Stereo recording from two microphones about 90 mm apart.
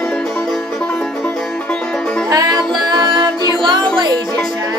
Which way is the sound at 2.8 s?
55° right (ahead or behind).